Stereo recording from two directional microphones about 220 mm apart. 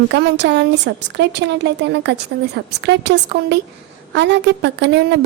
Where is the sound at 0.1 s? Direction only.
50° right (ahead or behind).